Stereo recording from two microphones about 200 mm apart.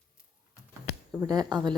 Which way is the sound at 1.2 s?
20° right (ahead or behind).